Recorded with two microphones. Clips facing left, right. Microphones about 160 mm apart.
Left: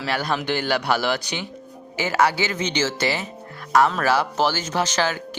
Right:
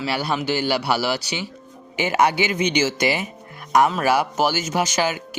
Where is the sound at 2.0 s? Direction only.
20° right (ahead or behind).